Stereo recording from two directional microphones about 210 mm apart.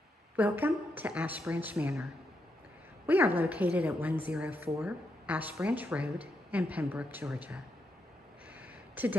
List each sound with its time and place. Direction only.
0.4 s a woman's voice: 10° right (ahead or behind)
3.1 s a woman's voice: 10° right (ahead or behind)
8.5 s a sound: 10° right (ahead or behind)